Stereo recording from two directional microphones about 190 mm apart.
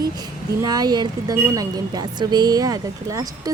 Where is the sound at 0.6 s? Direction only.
20° right (ahead or behind).